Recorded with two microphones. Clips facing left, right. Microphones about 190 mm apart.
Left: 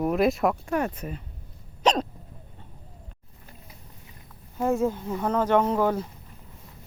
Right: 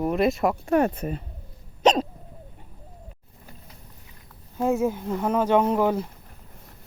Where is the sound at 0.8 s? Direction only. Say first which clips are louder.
Right 5 dB; 45° right (ahead or behind).